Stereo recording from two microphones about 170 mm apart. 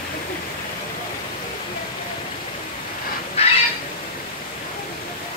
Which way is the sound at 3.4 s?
35° left (ahead or behind).